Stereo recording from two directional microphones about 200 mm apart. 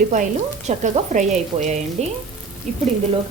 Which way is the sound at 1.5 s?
25° right (ahead or behind).